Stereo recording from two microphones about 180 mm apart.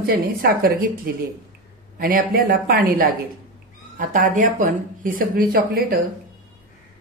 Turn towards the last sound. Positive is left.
turn(degrees=-55)  # may be behind; listen again after turning